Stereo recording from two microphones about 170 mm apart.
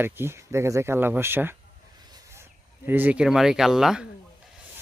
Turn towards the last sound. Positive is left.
turn(degrees=-5)  # may be behind; listen again after turning